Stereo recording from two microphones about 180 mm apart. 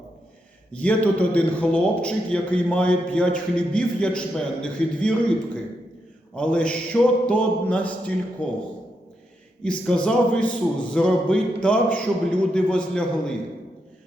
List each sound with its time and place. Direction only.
0.7 s a man's voice: 5° left (ahead or behind)
6.3 s a man's voice: 5° left (ahead or behind)
9.6 s a man's voice: 5° left (ahead or behind)